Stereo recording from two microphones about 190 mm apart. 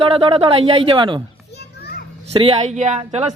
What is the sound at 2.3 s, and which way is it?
Speech, 30° right (ahead or behind).